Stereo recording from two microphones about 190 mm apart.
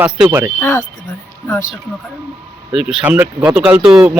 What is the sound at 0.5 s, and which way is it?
Speech, 15° left (ahead or behind).